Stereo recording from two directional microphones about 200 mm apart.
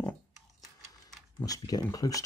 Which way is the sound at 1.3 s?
20° left (ahead or behind).